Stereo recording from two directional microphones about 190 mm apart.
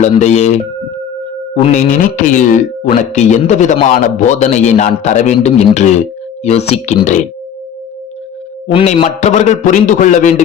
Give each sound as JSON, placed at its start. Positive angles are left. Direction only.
{"t": 0.0, "sound": "speech", "side_deg": 35}
{"t": 1.6, "sound": "speech", "side_deg": 40}
{"t": 8.6, "sound": "speech", "side_deg": 30}